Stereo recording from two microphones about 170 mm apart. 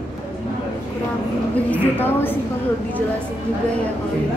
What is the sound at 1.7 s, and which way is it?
Speech, 10° left (ahead or behind).